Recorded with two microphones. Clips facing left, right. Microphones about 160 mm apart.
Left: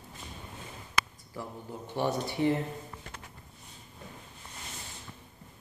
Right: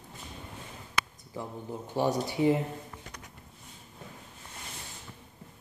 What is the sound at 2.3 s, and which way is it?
Speech, 15° right (ahead or behind).